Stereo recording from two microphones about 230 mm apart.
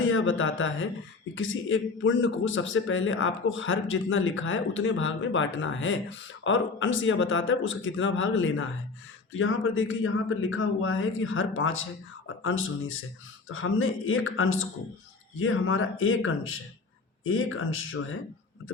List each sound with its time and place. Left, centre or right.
0.0 s a man's voice: left